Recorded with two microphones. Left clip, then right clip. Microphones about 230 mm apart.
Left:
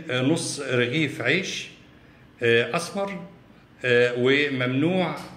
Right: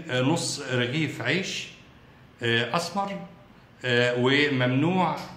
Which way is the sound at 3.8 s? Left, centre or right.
Right.